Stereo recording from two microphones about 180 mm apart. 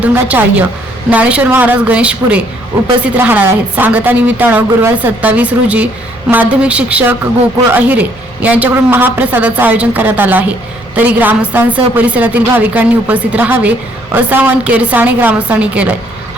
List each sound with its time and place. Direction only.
0.0 s a woman's voice: 10° right (ahead or behind)